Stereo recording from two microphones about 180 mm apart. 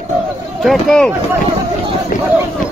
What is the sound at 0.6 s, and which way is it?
Speech, centre (ahead or behind).